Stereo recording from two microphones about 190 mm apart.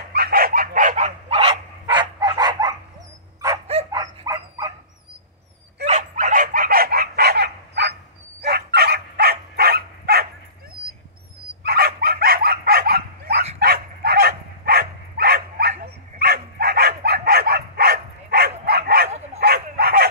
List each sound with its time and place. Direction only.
0.1 s dog: 55° right (ahead or behind); by 1.4 s 40° right (ahead or behind)
1.4 s dog: 25° right (ahead or behind)
3.9 s dog: 20° right (ahead or behind)
5.9 s dog: 40° right (ahead or behind); by 10.2 s 55° right (ahead or behind)
11.6 s dog: 55° right (ahead or behind)
19.4 s bow-wow: 55° right (ahead or behind)